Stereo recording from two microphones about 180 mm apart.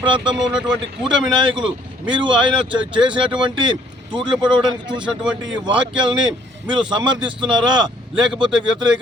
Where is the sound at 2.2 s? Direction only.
25° right (ahead or behind).